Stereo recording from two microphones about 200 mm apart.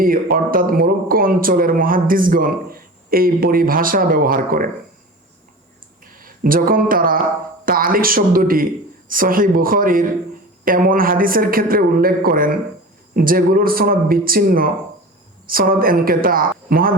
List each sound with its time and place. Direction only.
0.0 s a man's voice: 45° right (ahead or behind)
6.1 s a man's voice: 45° right (ahead or behind)